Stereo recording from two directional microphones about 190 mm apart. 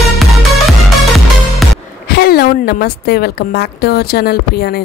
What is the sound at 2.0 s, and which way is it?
A woman's voice, 55° left (ahead or behind).